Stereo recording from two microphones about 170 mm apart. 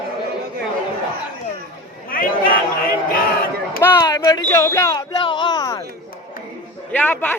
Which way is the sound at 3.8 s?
20° left (ahead or behind).